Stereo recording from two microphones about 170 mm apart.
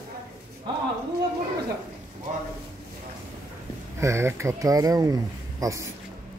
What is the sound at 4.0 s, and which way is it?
A man's voice, 15° right (ahead or behind).